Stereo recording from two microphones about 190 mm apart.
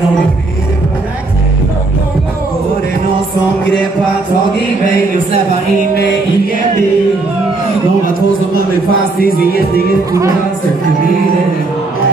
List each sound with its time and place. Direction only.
9.2 s music: 50° left (ahead or behind)